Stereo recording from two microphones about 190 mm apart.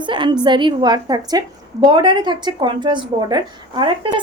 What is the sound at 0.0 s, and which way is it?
A woman's voice, 25° right (ahead or behind).